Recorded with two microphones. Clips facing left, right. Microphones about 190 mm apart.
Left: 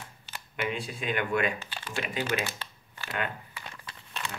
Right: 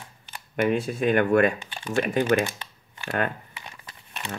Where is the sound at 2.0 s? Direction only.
50° right (ahead or behind).